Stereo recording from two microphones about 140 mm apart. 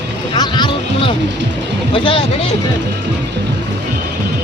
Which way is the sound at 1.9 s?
40° left (ahead or behind).